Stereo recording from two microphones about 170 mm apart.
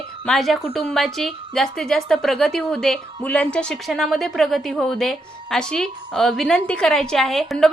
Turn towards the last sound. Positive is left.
turn(degrees=0)  # may be behind; listen again after turning